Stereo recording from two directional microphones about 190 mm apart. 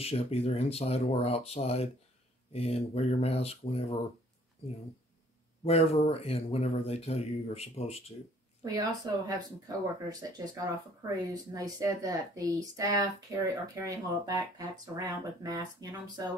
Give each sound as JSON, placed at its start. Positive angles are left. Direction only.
{"t": 0.0, "sound": "speech", "side_deg": 30}
{"t": 5.6, "sound": "speech", "side_deg": 30}
{"t": 9.1, "sound": "speech", "side_deg": -20}